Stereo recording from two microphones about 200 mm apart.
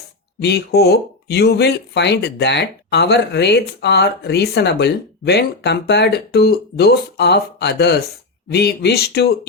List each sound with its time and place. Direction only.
0.4 s speech: 55° left (ahead or behind)